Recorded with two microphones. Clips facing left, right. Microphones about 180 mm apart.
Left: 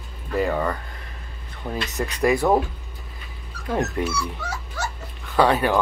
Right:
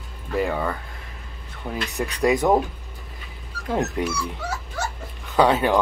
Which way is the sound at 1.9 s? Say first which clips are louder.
Even; 15° right (ahead or behind).